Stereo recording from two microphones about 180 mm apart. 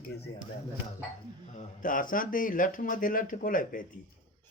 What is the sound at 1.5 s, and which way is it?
Speech, 45° left (ahead or behind).